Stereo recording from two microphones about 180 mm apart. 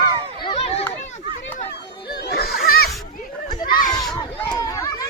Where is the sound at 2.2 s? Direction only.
60° left (ahead or behind).